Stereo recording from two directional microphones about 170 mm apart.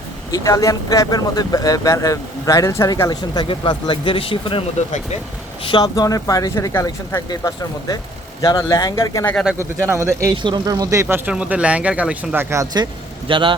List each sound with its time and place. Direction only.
0.3 s speech: 20° left (ahead or behind)
9.3 s speech: 5° right (ahead or behind)
9.9 s speech: 15° right (ahead or behind)